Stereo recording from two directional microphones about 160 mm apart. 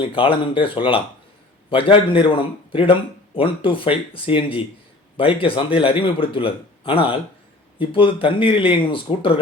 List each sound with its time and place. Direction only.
0.1 s a man's voice: 35° left (ahead or behind)